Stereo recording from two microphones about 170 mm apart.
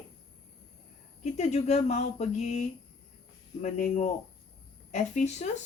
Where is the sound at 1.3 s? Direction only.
45° left (ahead or behind).